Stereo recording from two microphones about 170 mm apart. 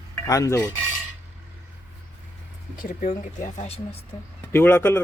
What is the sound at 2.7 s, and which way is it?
Speech, 55° left (ahead or behind).